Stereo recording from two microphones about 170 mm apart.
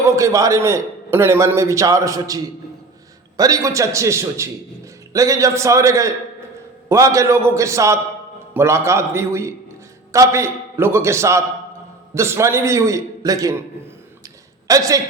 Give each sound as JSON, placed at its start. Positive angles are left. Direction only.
{"t": 0.2, "sound": "a man's voice", "side_deg": -20}
{"t": 14.7, "sound": "a man's voice", "side_deg": -20}